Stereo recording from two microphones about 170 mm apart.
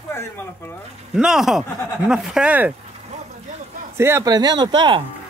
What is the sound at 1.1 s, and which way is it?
Speech, centre (ahead or behind).